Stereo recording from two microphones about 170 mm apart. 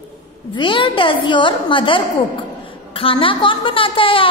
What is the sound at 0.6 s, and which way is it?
A woman's voice, 30° left (ahead or behind).